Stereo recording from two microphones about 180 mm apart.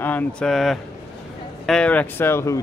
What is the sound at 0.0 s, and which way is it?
A man's voice, 10° left (ahead or behind).